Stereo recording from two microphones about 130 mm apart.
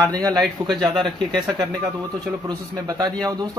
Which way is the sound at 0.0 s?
25° right (ahead or behind).